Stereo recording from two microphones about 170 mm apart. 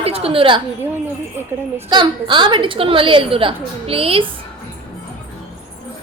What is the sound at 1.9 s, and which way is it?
A woman's voice, 25° right (ahead or behind).